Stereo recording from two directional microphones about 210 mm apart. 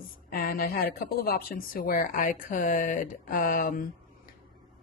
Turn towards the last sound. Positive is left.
turn(degrees=40)  # may be behind; listen again after turning